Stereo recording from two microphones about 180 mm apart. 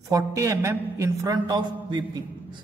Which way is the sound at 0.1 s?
15° right (ahead or behind).